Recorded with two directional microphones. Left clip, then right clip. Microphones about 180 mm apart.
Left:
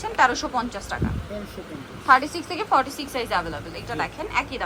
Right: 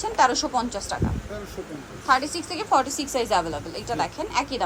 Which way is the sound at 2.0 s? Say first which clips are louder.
Left 4 dB; 5° right (ahead or behind).